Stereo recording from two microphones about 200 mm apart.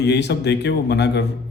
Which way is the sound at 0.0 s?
60° left (ahead or behind).